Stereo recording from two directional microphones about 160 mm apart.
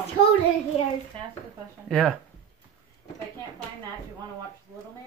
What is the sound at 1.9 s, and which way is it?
Speech, centre (ahead or behind).